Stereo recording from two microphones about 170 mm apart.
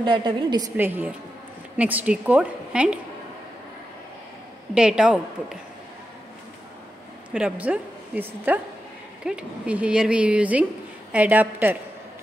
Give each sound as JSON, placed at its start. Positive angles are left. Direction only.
{"t": 0.0, "sound": "a woman's voice", "side_deg": -25}
{"t": 0.7, "sound": "a woman's voice", "side_deg": -10}
{"t": 4.7, "sound": "a woman's voice", "side_deg": -5}
{"t": 7.3, "sound": "a woman's voice", "side_deg": -5}